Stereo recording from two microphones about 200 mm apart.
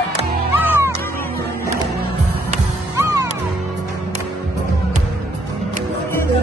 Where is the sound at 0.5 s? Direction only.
10° right (ahead or behind).